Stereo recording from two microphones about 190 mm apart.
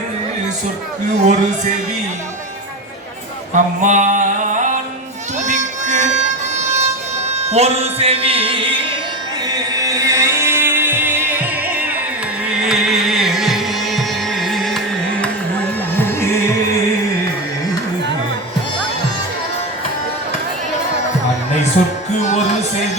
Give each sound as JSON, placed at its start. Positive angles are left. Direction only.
{"t": 1.2, "sound": "speech", "side_deg": -40}
{"t": 3.5, "sound": "music", "side_deg": -40}
{"t": 16.0, "sound": "music", "side_deg": 15}